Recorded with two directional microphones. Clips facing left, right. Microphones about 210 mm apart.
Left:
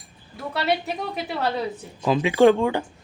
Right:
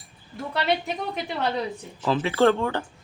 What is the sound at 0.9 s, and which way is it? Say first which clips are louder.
Speech: left 1 dB; 5° left (ahead or behind).